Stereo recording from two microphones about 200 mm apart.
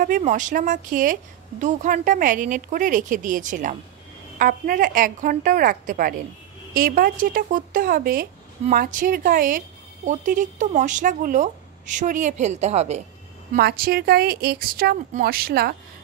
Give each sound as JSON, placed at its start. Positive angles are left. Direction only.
{"t": 0.0, "sound": "speech", "side_deg": -40}
{"t": 13.6, "sound": "speech", "side_deg": -50}